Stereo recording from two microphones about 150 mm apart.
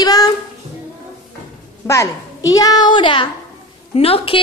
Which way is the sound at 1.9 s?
20° left (ahead or behind).